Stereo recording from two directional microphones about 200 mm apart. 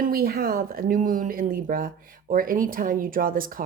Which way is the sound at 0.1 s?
50° right (ahead or behind).